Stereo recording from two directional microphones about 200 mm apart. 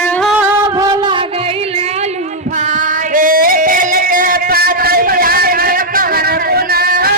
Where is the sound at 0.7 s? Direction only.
20° right (ahead or behind).